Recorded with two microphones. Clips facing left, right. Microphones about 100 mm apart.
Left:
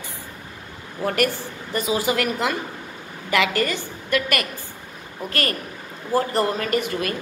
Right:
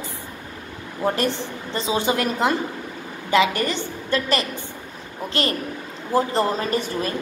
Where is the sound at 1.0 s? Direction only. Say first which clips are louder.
Even; 25° right (ahead or behind).